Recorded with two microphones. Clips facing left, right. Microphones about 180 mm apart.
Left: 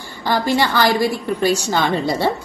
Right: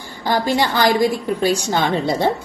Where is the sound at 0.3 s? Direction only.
15° right (ahead or behind).